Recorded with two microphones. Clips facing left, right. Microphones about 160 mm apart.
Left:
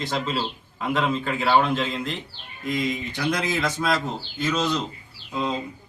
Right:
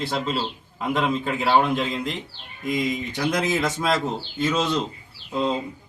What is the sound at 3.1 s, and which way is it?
Speech, 20° right (ahead or behind).